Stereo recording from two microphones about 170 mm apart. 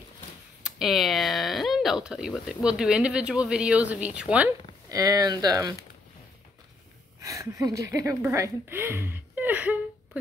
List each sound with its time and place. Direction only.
0.7 s speech: centre (ahead or behind)
4.8 s speech: 20° right (ahead or behind)
7.2 s speech: 20° right (ahead or behind)